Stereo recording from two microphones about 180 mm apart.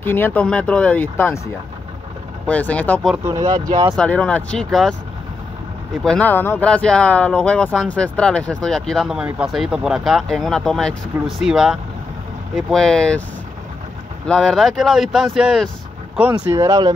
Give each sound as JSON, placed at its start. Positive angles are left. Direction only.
{"t": 0.0, "sound": "speech", "side_deg": 10}
{"t": 2.4, "sound": "speech", "side_deg": 10}
{"t": 3.3, "sound": "speech", "side_deg": -20}
{"t": 3.9, "sound": "speech", "side_deg": 5}
{"t": 6.0, "sound": "speech", "side_deg": 10}
{"t": 14.2, "sound": "speech", "side_deg": 5}
{"t": 16.2, "sound": "speech", "side_deg": -15}